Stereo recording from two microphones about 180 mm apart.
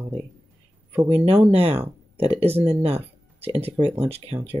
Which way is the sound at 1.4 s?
35° right (ahead or behind).